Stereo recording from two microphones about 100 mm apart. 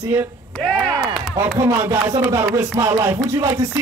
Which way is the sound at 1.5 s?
30° right (ahead or behind).